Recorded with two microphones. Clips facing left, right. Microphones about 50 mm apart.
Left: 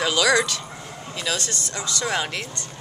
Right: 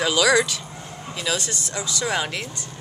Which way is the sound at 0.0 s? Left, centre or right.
Centre.